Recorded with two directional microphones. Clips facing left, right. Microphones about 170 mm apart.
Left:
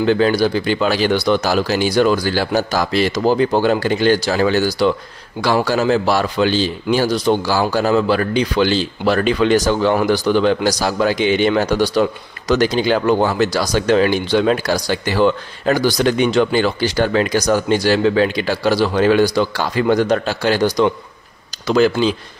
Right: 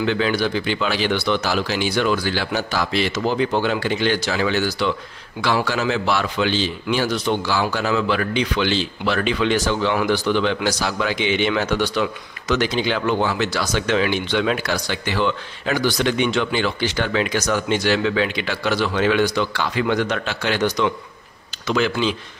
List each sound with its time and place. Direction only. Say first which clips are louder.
0.0 s a man's voice: left 6 dB; 40° left (ahead or behind)